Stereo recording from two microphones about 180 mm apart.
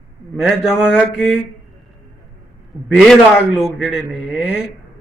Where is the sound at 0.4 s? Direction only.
5° right (ahead or behind).